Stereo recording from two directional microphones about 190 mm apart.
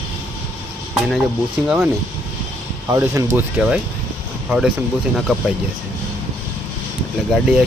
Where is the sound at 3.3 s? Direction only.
5° right (ahead or behind).